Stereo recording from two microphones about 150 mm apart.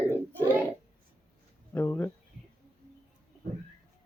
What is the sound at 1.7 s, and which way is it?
Speech, 15° left (ahead or behind).